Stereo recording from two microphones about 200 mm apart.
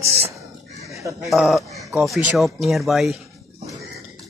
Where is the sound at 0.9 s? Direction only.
15° right (ahead or behind).